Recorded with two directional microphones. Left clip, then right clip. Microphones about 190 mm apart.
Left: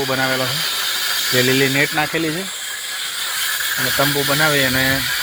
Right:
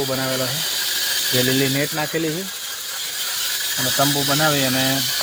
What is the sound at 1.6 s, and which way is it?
Speech, 25° left (ahead or behind).